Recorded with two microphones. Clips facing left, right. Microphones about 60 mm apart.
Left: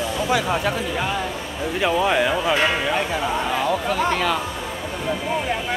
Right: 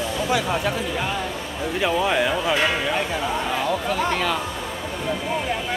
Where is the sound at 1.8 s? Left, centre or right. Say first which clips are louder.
Left 2 dB; left.